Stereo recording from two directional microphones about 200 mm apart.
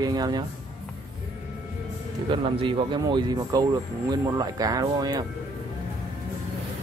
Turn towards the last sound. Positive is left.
turn(degrees=-20)  # may be behind; listen again after turning